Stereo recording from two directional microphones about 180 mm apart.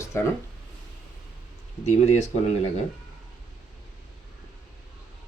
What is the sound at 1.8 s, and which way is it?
Speech, 40° left (ahead or behind).